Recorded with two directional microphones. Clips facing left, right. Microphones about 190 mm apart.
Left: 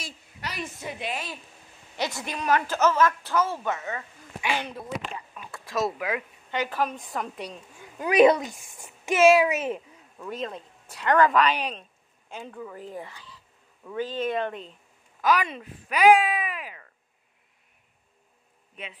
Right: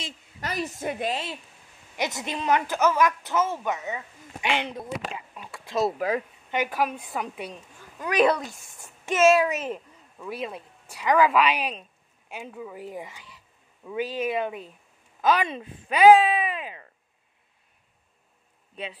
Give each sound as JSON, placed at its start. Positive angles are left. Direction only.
{"t": 0.4, "sound": "a woman's voice", "side_deg": -45}
{"t": 1.1, "sound": "a woman's voice", "side_deg": -25}
{"t": 5.3, "sound": "a sound", "side_deg": -20}
{"t": 5.9, "sound": "speech", "side_deg": -35}
{"t": 6.5, "sound": "a woman's voice", "side_deg": -15}
{"t": 8.3, "sound": "a woman's voice", "side_deg": 15}
{"t": 15.2, "sound": "speech", "side_deg": -25}
{"t": 18.8, "sound": "speech", "side_deg": -35}